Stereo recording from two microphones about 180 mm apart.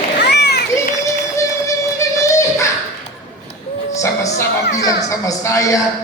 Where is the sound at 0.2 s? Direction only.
65° left (ahead or behind).